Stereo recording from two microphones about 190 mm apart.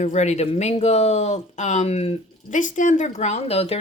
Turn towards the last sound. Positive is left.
turn(degrees=30)  # may be behind; listen again after turning